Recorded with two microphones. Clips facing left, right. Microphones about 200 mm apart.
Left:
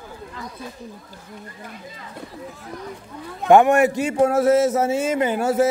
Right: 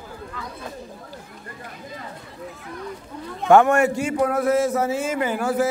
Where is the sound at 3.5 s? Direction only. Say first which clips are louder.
Left 1 dB; 15° left (ahead or behind).